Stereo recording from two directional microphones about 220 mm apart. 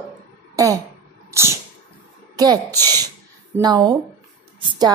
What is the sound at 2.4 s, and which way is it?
A woman's voice, 15° right (ahead or behind).